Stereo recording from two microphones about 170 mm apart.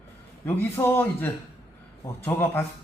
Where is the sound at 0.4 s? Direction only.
15° left (ahead or behind).